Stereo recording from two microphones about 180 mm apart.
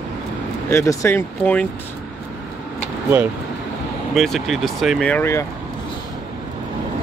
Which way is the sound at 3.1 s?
10° right (ahead or behind).